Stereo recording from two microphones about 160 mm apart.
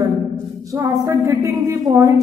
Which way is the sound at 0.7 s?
15° right (ahead or behind).